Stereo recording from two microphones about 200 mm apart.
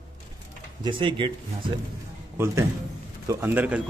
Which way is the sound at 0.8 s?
25° right (ahead or behind).